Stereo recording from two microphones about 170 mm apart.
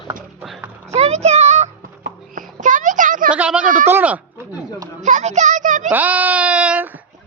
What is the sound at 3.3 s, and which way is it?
Speech, 5° right (ahead or behind).